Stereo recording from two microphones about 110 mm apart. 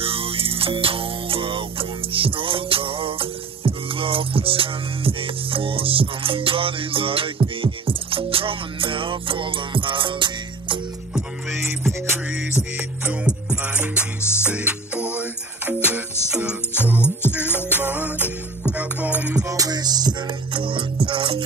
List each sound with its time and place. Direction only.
0.0 s music: 60° right (ahead or behind)
12.7 s music: 15° right (ahead or behind)
19.4 s music: 30° right (ahead or behind); by 21.4 s 50° right (ahead or behind)